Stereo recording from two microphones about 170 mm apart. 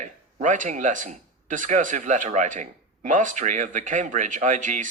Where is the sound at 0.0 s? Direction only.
50° right (ahead or behind).